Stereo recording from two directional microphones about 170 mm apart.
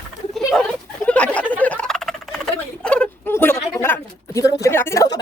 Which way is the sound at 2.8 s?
5° left (ahead or behind).